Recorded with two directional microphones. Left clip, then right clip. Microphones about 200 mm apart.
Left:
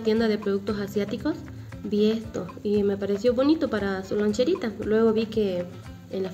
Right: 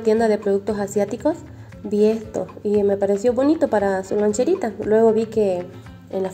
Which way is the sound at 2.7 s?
Centre (ahead or behind).